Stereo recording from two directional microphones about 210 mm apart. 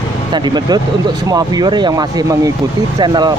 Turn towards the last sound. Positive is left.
turn(degrees=-20)  # may be behind; listen again after turning